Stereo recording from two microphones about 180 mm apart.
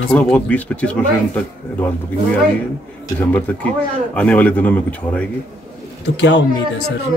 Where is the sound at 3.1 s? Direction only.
10° left (ahead or behind).